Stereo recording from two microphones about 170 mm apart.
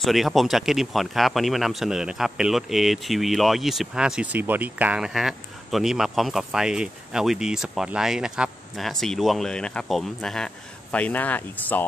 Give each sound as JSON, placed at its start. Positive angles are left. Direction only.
{"t": 0.0, "sound": "speech", "side_deg": 0}